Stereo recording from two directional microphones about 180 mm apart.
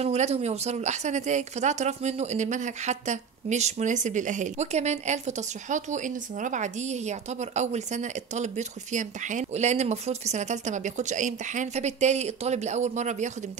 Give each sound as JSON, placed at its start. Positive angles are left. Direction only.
{"t": 0.0, "sound": "speech", "side_deg": -35}